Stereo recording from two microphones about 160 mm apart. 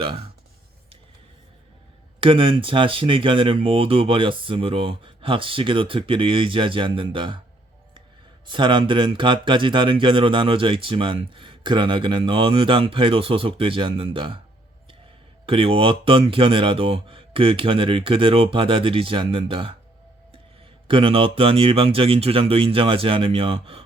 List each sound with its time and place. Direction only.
2.2 s speech: 35° right (ahead or behind)
8.4 s speech: 30° right (ahead or behind)
15.4 s speech: 35° right (ahead or behind)
20.8 s speech: 35° right (ahead or behind)